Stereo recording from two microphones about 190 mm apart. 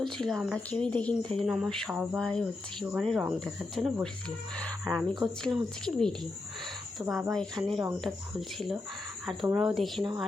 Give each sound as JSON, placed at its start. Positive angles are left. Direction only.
{"t": 0.0, "sound": "speech", "side_deg": 0}
{"t": 7.0, "sound": "speech", "side_deg": -15}
{"t": 7.3, "sound": "speech", "side_deg": 0}